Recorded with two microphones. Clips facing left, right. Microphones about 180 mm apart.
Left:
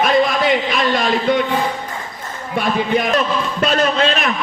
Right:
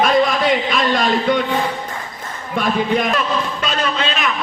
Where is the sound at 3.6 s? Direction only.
45° left (ahead or behind).